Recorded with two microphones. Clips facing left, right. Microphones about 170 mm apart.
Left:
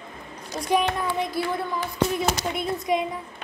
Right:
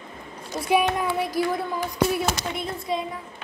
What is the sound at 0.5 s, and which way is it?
Speech, 5° right (ahead or behind).